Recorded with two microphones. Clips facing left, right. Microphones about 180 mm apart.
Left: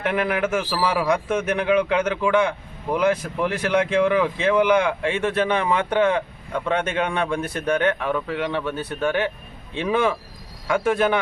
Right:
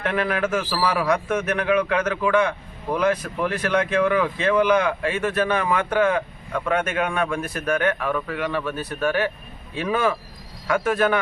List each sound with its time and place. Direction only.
0.0 s a man's voice: 15° left (ahead or behind)